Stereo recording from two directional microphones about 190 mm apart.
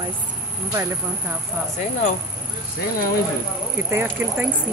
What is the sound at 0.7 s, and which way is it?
Speech, 10° right (ahead or behind).